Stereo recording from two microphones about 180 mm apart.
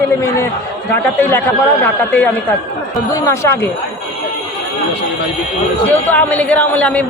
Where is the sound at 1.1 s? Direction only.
10° left (ahead or behind).